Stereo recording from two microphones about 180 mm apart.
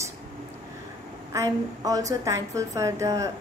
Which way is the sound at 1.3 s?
20° right (ahead or behind).